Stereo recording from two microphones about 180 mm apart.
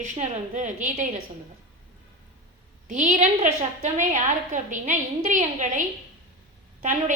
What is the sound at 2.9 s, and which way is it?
A woman's voice, 45° right (ahead or behind).